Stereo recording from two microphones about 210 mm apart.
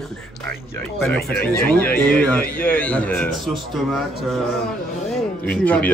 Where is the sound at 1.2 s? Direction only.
45° left (ahead or behind).